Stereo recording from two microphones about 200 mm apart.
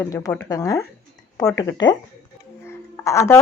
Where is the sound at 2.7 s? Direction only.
15° left (ahead or behind).